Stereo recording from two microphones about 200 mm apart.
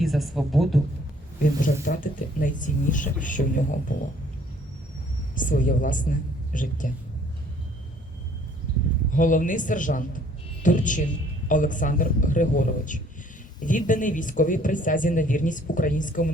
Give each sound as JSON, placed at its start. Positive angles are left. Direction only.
{"t": 0.0, "sound": "a woman's voice", "side_deg": 0}
{"t": 1.8, "sound": "speech", "side_deg": 40}
{"t": 5.3, "sound": "speech", "side_deg": 40}
{"t": 9.1, "sound": "speech", "side_deg": 40}